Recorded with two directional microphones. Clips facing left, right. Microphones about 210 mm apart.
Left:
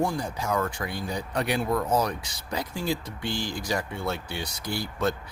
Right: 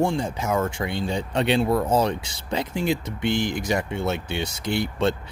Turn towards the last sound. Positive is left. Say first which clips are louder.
# right 5 dB
turn(degrees=-25)  # may be behind; listen again after turning